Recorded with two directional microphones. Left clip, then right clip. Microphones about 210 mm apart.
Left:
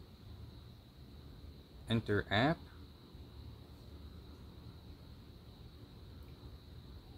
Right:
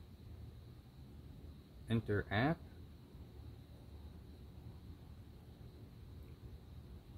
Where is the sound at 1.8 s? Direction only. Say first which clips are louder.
Left 3 dB; 20° left (ahead or behind).